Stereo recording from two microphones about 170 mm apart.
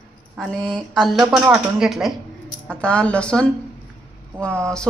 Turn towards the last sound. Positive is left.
turn(degrees=5)  # may be behind; listen again after turning